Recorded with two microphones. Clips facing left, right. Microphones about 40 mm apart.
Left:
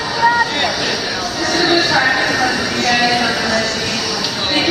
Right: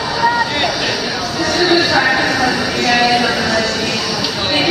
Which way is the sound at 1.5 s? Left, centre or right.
Centre.